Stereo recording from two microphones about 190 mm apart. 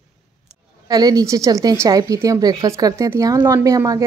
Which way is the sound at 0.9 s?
20° right (ahead or behind).